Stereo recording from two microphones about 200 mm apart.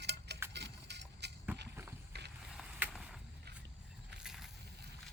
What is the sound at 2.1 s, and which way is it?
Vehicle, 55° right (ahead or behind).